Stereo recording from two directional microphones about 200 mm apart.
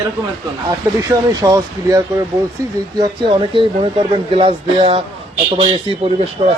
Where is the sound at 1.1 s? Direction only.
15° right (ahead or behind).